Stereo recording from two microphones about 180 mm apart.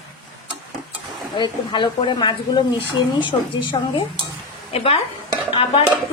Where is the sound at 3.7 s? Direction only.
25° left (ahead or behind).